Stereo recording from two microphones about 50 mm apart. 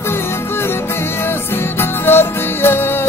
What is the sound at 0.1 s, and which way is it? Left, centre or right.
Music, left.